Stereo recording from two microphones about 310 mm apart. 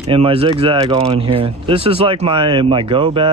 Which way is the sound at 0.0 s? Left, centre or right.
Centre.